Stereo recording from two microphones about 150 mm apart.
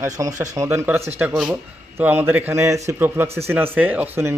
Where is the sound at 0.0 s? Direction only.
20° right (ahead or behind).